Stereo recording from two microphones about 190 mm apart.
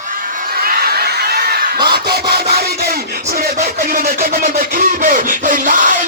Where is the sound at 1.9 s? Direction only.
55° right (ahead or behind).